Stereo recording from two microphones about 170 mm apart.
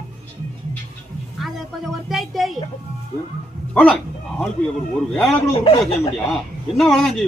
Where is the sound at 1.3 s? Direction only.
Centre (ahead or behind).